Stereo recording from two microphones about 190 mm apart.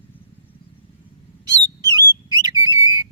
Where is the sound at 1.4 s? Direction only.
20° right (ahead or behind).